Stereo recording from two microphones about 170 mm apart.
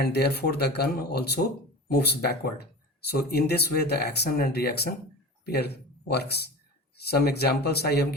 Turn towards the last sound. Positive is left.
turn(degrees=70)  # may be behind; listen again after turning